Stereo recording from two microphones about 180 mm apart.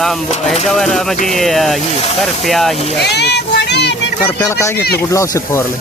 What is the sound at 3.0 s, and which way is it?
Speech, 65° left (ahead or behind).